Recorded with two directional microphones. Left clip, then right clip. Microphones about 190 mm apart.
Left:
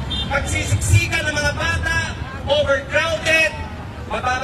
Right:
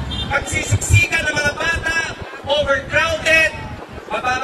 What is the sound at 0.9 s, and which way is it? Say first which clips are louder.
Speech: right 4 dB; 15° left (ahead or behind).